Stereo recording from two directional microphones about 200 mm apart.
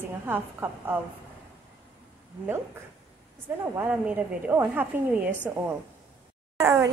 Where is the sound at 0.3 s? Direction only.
10° right (ahead or behind).